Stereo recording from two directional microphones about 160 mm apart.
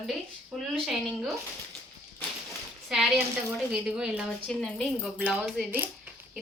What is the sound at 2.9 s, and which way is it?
A woman's voice, 5° right (ahead or behind).